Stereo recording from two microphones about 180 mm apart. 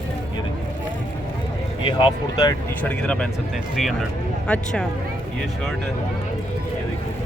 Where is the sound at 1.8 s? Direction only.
30° left (ahead or behind).